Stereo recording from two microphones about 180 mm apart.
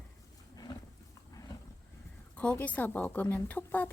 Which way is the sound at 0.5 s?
20° left (ahead or behind).